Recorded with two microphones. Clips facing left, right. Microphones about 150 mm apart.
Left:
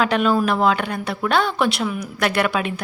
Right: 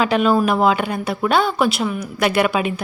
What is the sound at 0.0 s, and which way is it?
A woman's voice, 5° right (ahead or behind).